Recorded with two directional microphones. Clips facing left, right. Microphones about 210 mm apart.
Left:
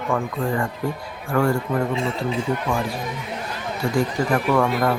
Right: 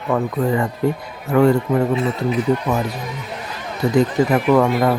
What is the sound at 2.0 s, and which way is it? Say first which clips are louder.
Speech: right 4 dB; 25° left (ahead or behind).